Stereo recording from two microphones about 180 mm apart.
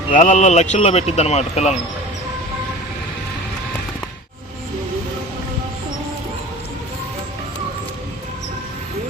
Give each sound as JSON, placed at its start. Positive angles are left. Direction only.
{"t": 0.1, "sound": "speech", "side_deg": 45}